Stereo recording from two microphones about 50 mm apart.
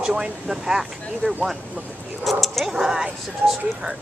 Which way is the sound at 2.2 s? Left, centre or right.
Centre.